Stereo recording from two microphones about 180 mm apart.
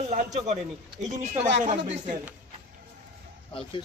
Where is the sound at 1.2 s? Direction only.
40° right (ahead or behind).